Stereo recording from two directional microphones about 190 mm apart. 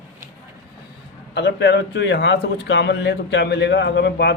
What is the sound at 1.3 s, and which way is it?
A man's voice, 65° left (ahead or behind).